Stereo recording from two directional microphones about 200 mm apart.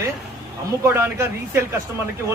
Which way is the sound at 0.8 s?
15° right (ahead or behind).